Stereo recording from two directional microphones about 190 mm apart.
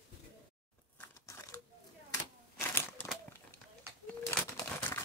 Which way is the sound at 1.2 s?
15° left (ahead or behind).